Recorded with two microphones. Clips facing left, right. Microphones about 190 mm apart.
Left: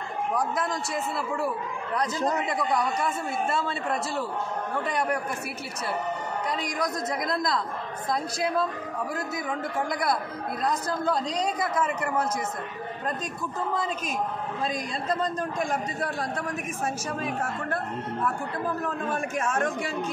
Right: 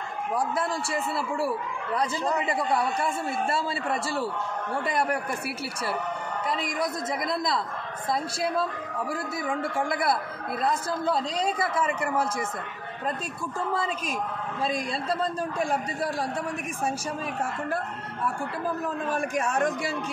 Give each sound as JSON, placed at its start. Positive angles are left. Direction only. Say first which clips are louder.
{"t": 0.9, "sound": "a man's voice", "louder": "right 1 dB", "side_deg": -10}
{"t": 2.5, "sound": "a man's voice", "louder": "even", "side_deg": -30}
{"t": 6.8, "sound": "a man's voice", "louder": "even", "side_deg": -5}
{"t": 9.8, "sound": "a man's voice", "louder": "left 1 dB", "side_deg": -5}
{"t": 15.6, "sound": "a man's voice", "louder": "right 2 dB", "side_deg": -30}
{"t": 16.2, "sound": "a man's voice", "louder": "right 1 dB", "side_deg": -10}
{"t": 19.1, "sound": "a man's voice", "louder": "right 3 dB", "side_deg": -35}
{"t": 19.5, "sound": "a man's voice", "louder": "right 1 dB", "side_deg": -15}